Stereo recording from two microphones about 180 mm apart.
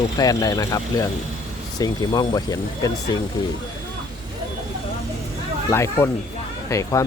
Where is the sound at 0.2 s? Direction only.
20° left (ahead or behind).